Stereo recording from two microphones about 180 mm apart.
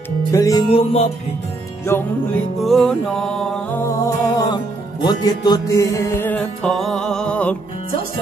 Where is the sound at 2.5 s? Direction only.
Centre (ahead or behind).